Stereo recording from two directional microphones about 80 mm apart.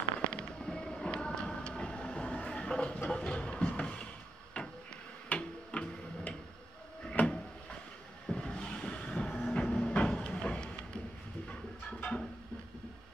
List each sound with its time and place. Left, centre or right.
0.2 s music: centre
4.6 s a sound: left
5.3 s tick-tock: centre
7.1 s drawer open or close: centre
8.3 s vehicle: centre
9.4 s a sound: centre